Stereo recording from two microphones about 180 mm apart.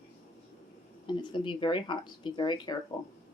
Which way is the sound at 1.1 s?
25° left (ahead or behind).